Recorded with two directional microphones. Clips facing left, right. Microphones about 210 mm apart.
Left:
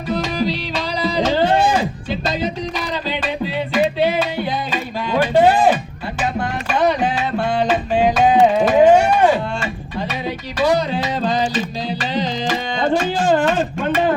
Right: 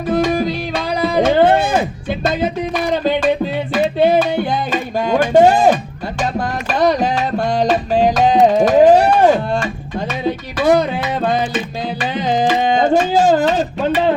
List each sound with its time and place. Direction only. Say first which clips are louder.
0.1 s music: right 4 dB; 50° right (ahead or behind)
10.6 s music: right 3 dB; 55° right (ahead or behind)